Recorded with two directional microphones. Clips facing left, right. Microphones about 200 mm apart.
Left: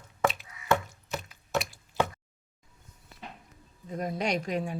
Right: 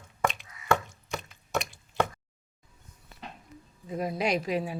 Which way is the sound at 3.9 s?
5° right (ahead or behind).